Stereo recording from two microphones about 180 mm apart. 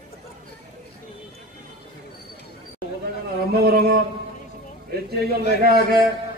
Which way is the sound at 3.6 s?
55° right (ahead or behind).